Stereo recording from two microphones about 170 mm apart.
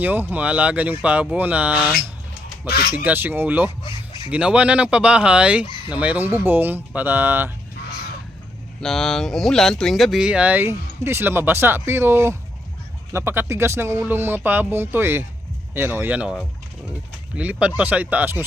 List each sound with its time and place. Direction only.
0.0 s speech: 10° right (ahead or behind)
2.6 s speech: 65° left (ahead or behind)
2.9 s speech: 10° right (ahead or behind)
3.8 s a sound: 30° left (ahead or behind)
4.3 s speech: 5° right (ahead or behind)
8.8 s speech: centre (ahead or behind)